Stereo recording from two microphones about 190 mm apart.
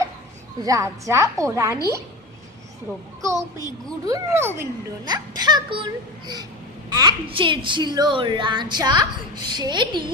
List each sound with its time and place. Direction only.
0.6 s a woman's voice: 15° right (ahead or behind)
3.2 s a woman's voice: 15° right (ahead or behind)